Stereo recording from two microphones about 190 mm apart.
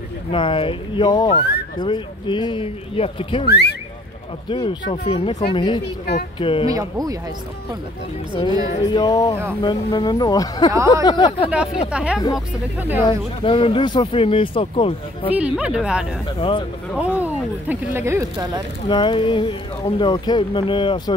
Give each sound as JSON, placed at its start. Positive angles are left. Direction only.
{"t": 0.3, "sound": "speech", "side_deg": 25}
{"t": 4.5, "sound": "speech", "side_deg": 25}
{"t": 6.7, "sound": "speech", "side_deg": -20}
{"t": 8.4, "sound": "speech", "side_deg": 20}
{"t": 11.9, "sound": "speech", "side_deg": -5}
{"t": 13.0, "sound": "speech", "side_deg": 30}
{"t": 15.3, "sound": "speech", "side_deg": -5}
{"t": 16.3, "sound": "speech", "side_deg": 25}
{"t": 17.0, "sound": "speech", "side_deg": -10}
{"t": 18.9, "sound": "speech", "side_deg": 25}